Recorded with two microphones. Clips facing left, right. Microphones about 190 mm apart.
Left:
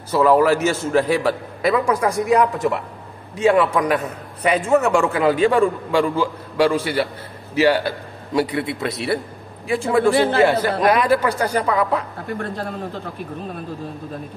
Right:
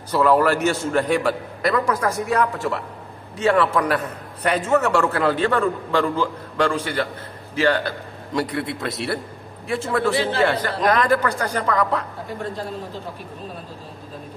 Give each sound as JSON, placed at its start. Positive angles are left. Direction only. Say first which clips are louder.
{"t": 0.1, "sound": "a man's voice", "louder": "left 2 dB", "side_deg": 10}
{"t": 10.1, "sound": "speech", "louder": "left 5 dB", "side_deg": 55}
{"t": 10.4, "sound": "a man's voice", "louder": "left 4 dB", "side_deg": 10}